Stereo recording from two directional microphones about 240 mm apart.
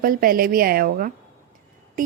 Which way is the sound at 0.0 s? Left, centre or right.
Right.